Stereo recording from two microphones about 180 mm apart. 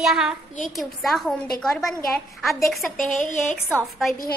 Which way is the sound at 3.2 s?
45° left (ahead or behind).